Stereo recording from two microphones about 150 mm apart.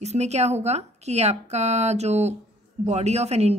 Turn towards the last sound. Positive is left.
turn(degrees=-45)  # may be behind; listen again after turning